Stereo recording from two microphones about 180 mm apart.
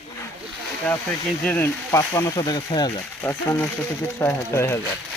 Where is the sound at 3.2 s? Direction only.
10° left (ahead or behind).